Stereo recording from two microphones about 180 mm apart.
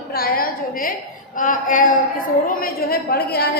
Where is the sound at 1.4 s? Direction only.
50° left (ahead or behind).